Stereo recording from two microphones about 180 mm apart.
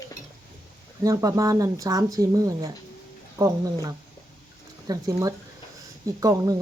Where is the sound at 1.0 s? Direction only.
20° right (ahead or behind).